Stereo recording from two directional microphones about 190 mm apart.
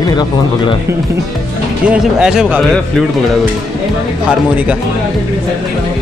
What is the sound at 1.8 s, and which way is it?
Speech, 5° right (ahead or behind).